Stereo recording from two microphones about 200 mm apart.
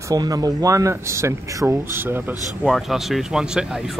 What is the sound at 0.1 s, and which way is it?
Speech, 20° right (ahead or behind).